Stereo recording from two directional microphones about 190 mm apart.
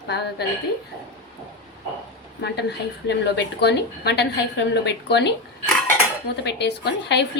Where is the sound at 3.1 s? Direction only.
60° left (ahead or behind).